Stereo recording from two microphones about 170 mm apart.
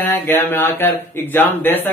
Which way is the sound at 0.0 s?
10° left (ahead or behind).